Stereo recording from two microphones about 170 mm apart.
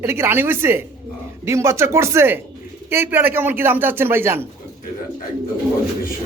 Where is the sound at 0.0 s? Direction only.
15° right (ahead or behind).